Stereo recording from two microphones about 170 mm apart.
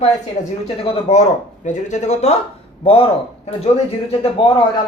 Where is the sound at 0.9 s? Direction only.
40° left (ahead or behind).